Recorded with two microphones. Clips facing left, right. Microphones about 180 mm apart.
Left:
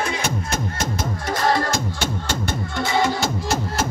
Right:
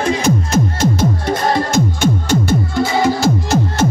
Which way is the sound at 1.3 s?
20° right (ahead or behind).